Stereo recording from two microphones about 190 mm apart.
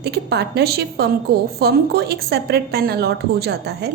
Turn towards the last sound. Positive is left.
turn(degrees=-60)  # may be behind; listen again after turning